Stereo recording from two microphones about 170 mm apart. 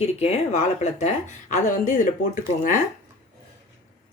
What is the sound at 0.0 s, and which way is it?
Speech, 40° left (ahead or behind).